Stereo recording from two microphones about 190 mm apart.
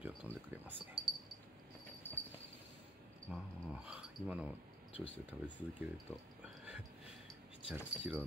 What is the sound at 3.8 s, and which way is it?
Speech, 5° right (ahead or behind).